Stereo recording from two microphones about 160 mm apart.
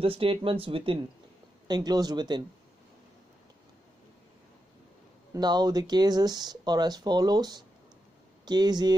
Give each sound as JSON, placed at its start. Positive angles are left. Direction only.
{"t": 0.0, "sound": "speech", "side_deg": -35}
{"t": 5.3, "sound": "speech", "side_deg": -25}